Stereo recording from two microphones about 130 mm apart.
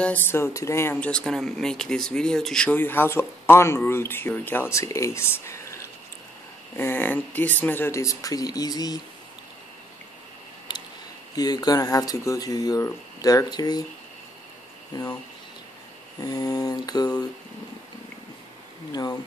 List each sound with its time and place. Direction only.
0.0 s speech: 15° left (ahead or behind); by 9.0 s 30° left (ahead or behind)
10.7 s a sound: 35° left (ahead or behind)
11.3 s speech: 30° left (ahead or behind)
14.9 s speech: 30° left (ahead or behind)
16.2 s speech: 30° left (ahead or behind)
18.9 s speech: 30° left (ahead or behind)